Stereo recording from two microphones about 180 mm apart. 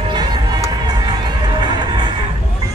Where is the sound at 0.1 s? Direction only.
25° right (ahead or behind).